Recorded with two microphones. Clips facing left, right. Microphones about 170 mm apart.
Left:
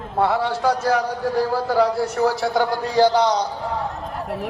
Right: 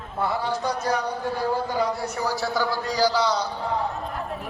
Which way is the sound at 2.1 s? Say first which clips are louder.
Left 6 dB; 55° left (ahead or behind).